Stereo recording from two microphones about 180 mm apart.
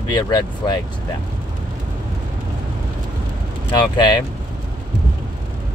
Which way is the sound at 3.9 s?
25° left (ahead or behind).